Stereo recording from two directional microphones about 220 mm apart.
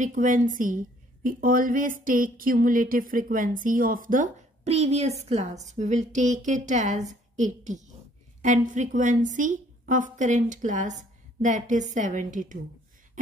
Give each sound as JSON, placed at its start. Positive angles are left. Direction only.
{"t": 0.0, "sound": "a woman's voice", "side_deg": -35}